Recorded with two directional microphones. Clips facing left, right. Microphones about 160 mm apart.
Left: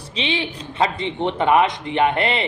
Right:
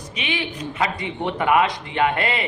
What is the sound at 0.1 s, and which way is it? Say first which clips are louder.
Speech: left 3 dB; 30° left (ahead or behind).